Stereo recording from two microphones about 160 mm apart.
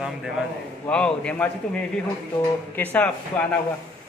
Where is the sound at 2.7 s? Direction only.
10° left (ahead or behind).